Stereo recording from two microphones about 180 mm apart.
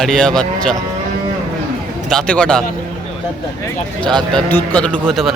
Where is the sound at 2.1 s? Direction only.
5° left (ahead or behind).